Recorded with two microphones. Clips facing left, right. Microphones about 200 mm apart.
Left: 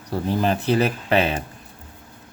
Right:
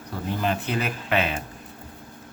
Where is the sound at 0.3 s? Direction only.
35° left (ahead or behind).